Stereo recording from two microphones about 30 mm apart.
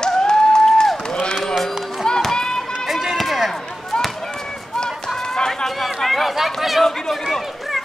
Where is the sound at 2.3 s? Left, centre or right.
Left.